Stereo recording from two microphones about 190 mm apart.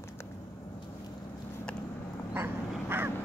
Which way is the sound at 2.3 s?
10° right (ahead or behind).